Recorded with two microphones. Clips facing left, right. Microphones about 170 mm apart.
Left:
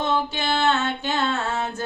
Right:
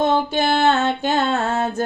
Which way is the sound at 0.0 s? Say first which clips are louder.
Right 6 dB; 45° right (ahead or behind).